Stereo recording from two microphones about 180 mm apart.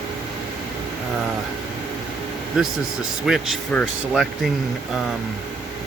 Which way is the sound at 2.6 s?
Centre (ahead or behind).